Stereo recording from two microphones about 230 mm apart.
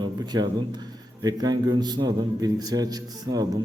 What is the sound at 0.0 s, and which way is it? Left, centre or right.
A man's voice, centre.